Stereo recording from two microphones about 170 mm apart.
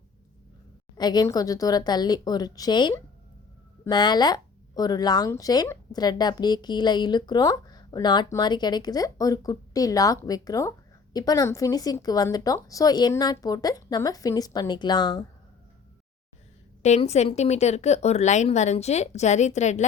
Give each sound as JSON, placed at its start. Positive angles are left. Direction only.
{"t": 0.9, "sound": "speech", "side_deg": 25}
{"t": 16.8, "sound": "speech", "side_deg": 40}